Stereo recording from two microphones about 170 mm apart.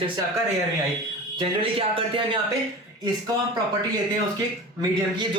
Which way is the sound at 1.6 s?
30° right (ahead or behind).